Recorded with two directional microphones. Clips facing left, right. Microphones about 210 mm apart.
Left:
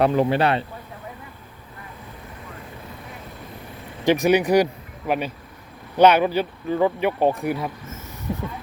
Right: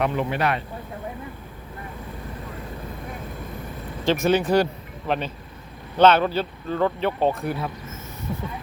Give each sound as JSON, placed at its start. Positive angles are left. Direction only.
{"t": 0.0, "sound": "speech", "side_deg": 35}
{"t": 4.0, "sound": "speech", "side_deg": 15}